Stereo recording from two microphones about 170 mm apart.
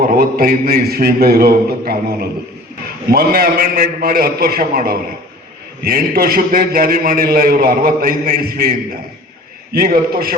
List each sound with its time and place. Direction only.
0.2 s a man's voice: 60° right (ahead or behind)
9.7 s a man's voice: 60° right (ahead or behind)